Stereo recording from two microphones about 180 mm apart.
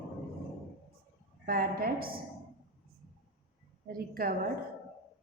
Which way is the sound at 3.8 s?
55° right (ahead or behind).